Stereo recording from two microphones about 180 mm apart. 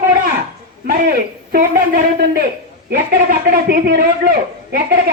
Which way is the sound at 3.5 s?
55° right (ahead or behind).